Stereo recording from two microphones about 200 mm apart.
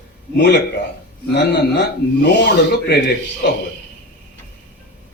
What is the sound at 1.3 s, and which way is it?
Speech, 55° left (ahead or behind).